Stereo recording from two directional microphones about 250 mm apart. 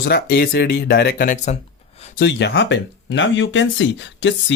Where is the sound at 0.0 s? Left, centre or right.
Left.